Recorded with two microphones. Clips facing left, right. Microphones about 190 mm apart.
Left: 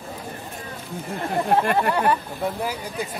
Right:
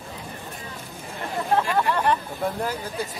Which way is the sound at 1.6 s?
55° left (ahead or behind).